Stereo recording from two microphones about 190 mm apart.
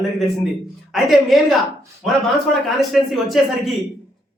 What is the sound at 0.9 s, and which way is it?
Speech, centre (ahead or behind).